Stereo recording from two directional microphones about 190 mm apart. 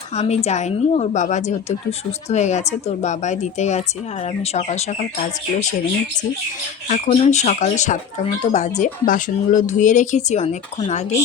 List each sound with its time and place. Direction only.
0.2 s speech: 35° left (ahead or behind)
6.8 s speech: 40° left (ahead or behind)